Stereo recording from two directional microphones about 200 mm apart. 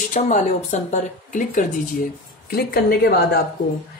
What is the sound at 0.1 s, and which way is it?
Speech, 35° left (ahead or behind).